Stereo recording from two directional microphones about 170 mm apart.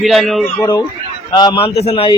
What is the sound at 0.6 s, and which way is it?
A man's voice, 25° left (ahead or behind).